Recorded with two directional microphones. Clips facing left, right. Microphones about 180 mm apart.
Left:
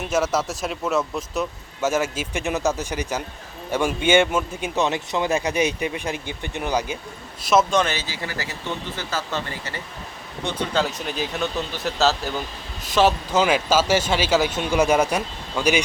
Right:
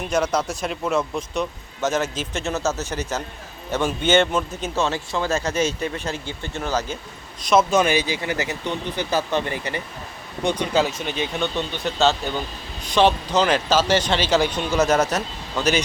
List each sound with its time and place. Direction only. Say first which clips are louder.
0.0 s speech: even; 5° left (ahead or behind)
7.4 s speech: right 1 dB; 5° right (ahead or behind)